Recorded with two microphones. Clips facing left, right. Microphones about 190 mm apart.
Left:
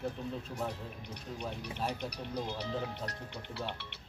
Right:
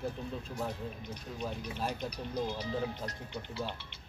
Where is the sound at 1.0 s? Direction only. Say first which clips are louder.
Right 2 dB; 70° left (ahead or behind).